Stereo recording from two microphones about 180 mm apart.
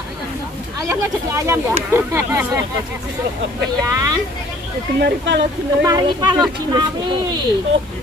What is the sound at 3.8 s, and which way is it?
Speech, 20° right (ahead or behind).